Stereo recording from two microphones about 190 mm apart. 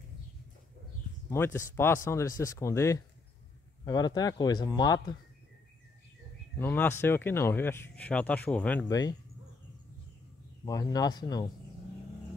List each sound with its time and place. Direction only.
1.3 s speech: 15° left (ahead or behind)
6.6 s speech: 10° left (ahead or behind)
8.8 s speech: 20° left (ahead or behind)
10.6 s speech: 20° left (ahead or behind)